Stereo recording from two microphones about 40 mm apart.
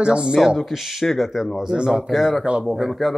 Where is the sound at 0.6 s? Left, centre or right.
Centre.